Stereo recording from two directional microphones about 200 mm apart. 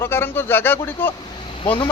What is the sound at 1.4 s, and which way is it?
Vehicle, 25° left (ahead or behind).